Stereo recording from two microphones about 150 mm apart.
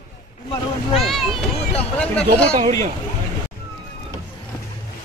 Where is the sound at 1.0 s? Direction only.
Centre (ahead or behind).